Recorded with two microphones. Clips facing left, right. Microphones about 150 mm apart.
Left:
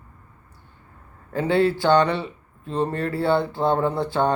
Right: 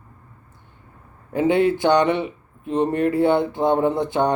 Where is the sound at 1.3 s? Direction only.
20° right (ahead or behind).